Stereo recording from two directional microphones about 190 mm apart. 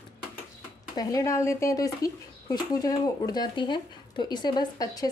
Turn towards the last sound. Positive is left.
turn(degrees=20)  # may be behind; listen again after turning